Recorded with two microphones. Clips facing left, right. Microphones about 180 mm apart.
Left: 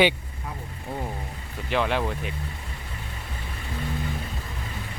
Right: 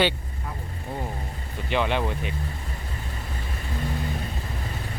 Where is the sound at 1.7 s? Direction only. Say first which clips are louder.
Even; centre (ahead or behind).